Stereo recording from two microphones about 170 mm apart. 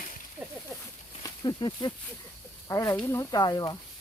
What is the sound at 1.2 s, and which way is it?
Speech, 25° left (ahead or behind).